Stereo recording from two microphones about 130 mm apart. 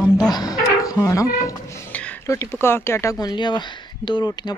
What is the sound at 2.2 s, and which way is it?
Speech, 20° left (ahead or behind).